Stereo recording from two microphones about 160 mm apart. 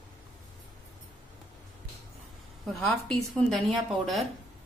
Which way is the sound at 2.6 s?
Centre (ahead or behind).